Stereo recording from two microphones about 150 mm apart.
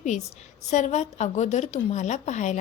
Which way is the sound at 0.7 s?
50° left (ahead or behind).